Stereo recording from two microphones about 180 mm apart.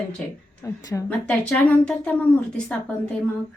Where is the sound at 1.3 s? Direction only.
5° left (ahead or behind).